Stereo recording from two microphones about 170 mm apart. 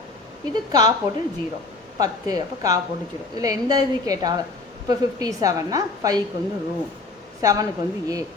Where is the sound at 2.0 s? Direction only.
20° right (ahead or behind).